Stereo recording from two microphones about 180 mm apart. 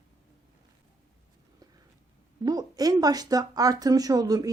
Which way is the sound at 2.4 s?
20° right (ahead or behind).